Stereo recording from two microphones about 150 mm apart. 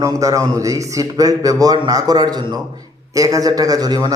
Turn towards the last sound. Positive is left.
turn(degrees=-25)  # may be behind; listen again after turning